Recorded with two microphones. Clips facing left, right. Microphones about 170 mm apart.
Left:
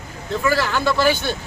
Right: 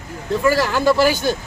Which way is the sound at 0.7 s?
15° right (ahead or behind).